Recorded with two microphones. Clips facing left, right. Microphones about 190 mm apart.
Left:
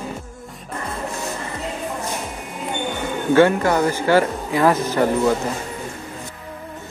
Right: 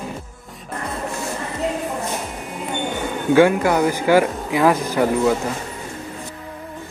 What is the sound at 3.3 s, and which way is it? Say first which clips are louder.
A man's voice: right 1 dB; 10° right (ahead or behind).